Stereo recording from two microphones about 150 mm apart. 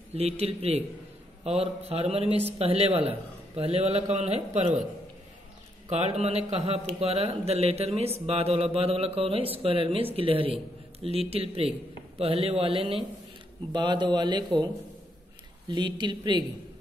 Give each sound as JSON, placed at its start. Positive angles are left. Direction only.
{"t": 0.1, "sound": "a man's voice", "side_deg": -45}
{"t": 5.9, "sound": "a man's voice", "side_deg": -45}
{"t": 15.7, "sound": "speech", "side_deg": -30}